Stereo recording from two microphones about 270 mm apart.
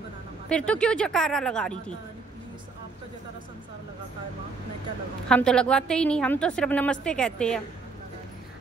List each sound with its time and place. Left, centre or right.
0.5 s a woman's voice: centre
5.3 s a woman's voice: centre